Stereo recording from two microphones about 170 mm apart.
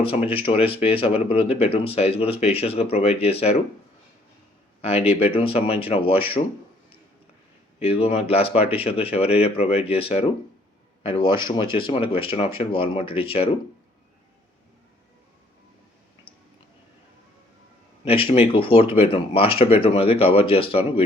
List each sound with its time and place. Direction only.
0.0 s speech: 35° left (ahead or behind)
4.8 s speech: 35° left (ahead or behind)
7.8 s a man's voice: 35° left (ahead or behind)
18.0 s speech: 35° left (ahead or behind)